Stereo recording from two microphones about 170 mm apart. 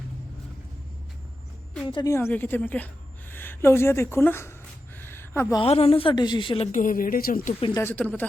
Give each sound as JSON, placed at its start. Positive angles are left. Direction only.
{"t": 1.9, "sound": "a woman's voice", "side_deg": 25}
{"t": 2.1, "sound": "speech", "side_deg": 10}
{"t": 4.9, "sound": "a sound", "side_deg": 10}
{"t": 5.5, "sound": "a woman's voice", "side_deg": 35}
{"t": 6.7, "sound": "speech", "side_deg": 50}
{"t": 7.8, "sound": "speech", "side_deg": 10}